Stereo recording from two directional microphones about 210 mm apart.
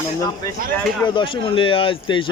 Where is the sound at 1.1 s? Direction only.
25° left (ahead or behind).